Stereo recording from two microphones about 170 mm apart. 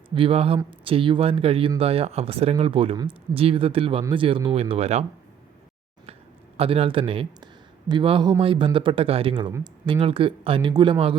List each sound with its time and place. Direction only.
0.1 s speech: 30° right (ahead or behind)
6.6 s speech: 35° right (ahead or behind)